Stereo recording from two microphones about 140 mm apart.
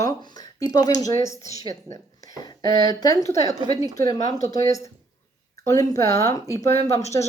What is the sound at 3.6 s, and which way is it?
Speech, 25° right (ahead or behind).